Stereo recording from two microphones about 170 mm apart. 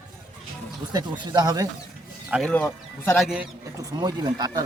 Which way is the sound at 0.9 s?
25° right (ahead or behind).